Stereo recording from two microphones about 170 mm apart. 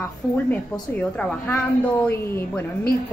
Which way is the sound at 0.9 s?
10° left (ahead or behind).